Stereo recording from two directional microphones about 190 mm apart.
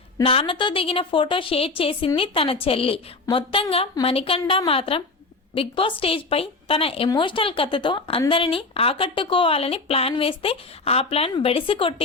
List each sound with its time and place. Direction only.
0.3 s speech: 30° left (ahead or behind)